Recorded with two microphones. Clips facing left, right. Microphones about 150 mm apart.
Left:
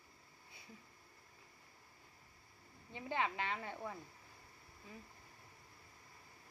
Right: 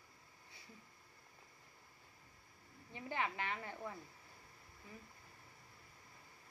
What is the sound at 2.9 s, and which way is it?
A woman's voice, 20° left (ahead or behind).